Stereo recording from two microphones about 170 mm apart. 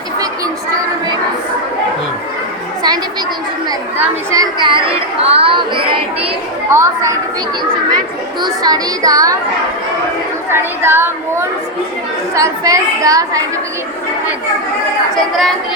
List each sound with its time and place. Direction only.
3.9 s speech: 15° right (ahead or behind); by 5.8 s 30° right (ahead or behind)
6.7 s speech: 15° right (ahead or behind)
8.6 s speech: 20° right (ahead or behind)
10.5 s speech: 15° right (ahead or behind)
15.1 s a woman's voice: centre (ahead or behind)